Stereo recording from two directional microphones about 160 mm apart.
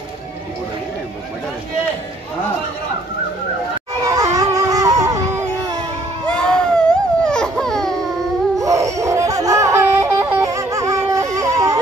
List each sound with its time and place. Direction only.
4.0 s screaming: 20° right (ahead or behind)
4.4 s music: 20° right (ahead or behind)
6.2 s baby cry: 5° left (ahead or behind)
8.5 s laughter: 20° right (ahead or behind)
11.3 s a sound: 20° right (ahead or behind)